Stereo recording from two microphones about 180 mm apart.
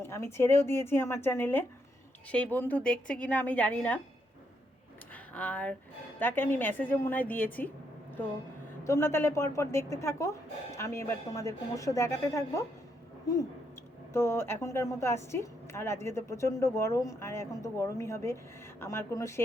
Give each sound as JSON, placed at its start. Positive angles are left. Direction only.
{"t": 0.0, "sound": "a woman's voice", "side_deg": 15}
{"t": 5.1, "sound": "a woman's voice", "side_deg": 5}
{"t": 8.8, "sound": "a woman's voice", "side_deg": 15}